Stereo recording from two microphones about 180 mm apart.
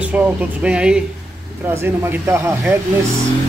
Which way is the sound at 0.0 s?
10° right (ahead or behind).